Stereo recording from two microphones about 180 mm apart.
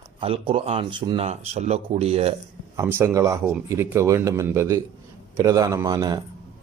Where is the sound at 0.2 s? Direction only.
30° right (ahead or behind).